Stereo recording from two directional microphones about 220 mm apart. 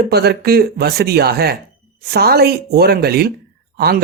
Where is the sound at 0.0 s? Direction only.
45° right (ahead or behind).